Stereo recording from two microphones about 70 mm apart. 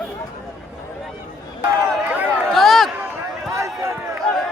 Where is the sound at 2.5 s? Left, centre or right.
Centre.